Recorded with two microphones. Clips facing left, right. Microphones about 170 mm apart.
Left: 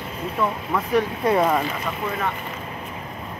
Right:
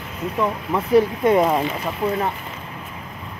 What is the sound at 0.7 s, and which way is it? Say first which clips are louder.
Speech: right 7 dB; 25° right (ahead or behind).